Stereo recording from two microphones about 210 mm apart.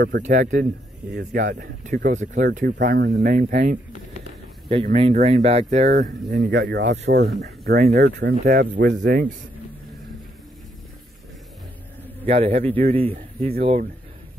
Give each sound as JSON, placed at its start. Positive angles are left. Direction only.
{"t": 0.2, "sound": "speech", "side_deg": -35}
{"t": 4.9, "sound": "speech", "side_deg": -30}
{"t": 5.9, "sound": "speech", "side_deg": -45}
{"t": 12.3, "sound": "speech", "side_deg": -30}